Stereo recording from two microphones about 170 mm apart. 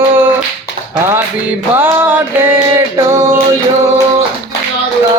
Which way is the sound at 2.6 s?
15° right (ahead or behind).